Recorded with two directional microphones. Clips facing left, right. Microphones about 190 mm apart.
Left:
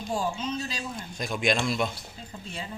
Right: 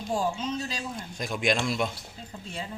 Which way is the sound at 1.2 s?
10° right (ahead or behind).